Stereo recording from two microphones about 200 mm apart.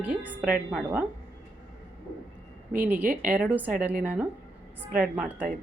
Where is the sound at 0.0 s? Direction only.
10° right (ahead or behind).